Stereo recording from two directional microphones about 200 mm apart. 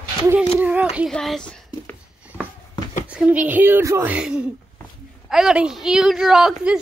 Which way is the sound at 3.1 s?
5° right (ahead or behind).